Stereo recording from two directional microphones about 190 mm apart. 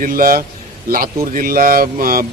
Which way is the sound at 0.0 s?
50° right (ahead or behind).